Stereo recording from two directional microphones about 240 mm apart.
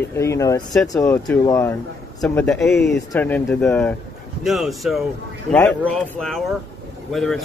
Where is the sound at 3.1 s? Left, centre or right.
Centre.